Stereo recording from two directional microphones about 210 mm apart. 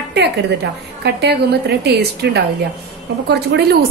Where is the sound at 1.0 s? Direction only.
50° right (ahead or behind).